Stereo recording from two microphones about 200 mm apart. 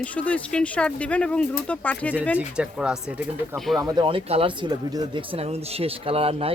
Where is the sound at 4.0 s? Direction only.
25° right (ahead or behind).